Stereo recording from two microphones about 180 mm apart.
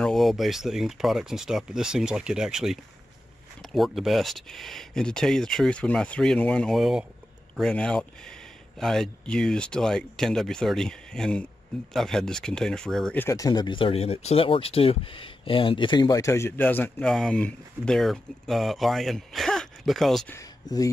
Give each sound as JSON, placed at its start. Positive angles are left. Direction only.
{"t": 0.0, "sound": "speech", "side_deg": 0}
{"t": 20.3, "sound": "speech", "side_deg": 20}